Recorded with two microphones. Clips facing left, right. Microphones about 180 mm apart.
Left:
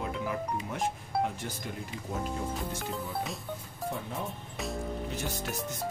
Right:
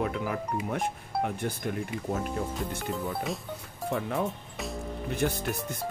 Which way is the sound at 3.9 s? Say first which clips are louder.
Right 7 dB; 75° right (ahead or behind).